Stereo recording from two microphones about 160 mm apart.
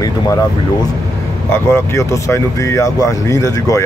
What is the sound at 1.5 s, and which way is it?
Speech, 15° left (ahead or behind).